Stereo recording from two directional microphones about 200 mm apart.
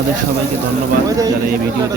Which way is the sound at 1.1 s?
20° right (ahead or behind).